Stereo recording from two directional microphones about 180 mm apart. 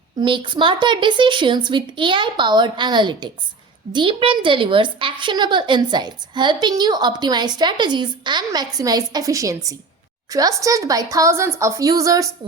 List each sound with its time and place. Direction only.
0.2 s a woman's voice: 25° right (ahead or behind)